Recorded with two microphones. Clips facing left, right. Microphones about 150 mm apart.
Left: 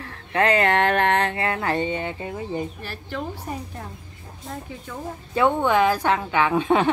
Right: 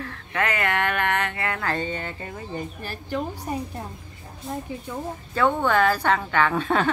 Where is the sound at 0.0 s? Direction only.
25° left (ahead or behind).